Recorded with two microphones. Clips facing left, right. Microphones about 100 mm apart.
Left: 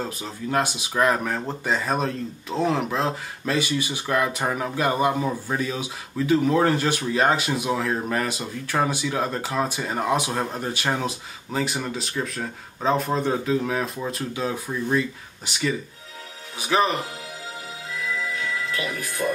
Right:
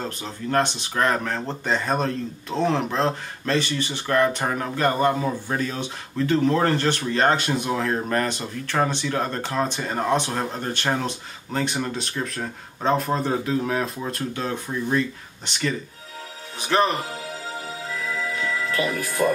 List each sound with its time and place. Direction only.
0.0 s speech: 5° left (ahead or behind)
18.7 s speech: 40° right (ahead or behind)